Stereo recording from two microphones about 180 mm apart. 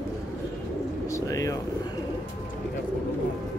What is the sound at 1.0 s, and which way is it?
Bird, 15° left (ahead or behind).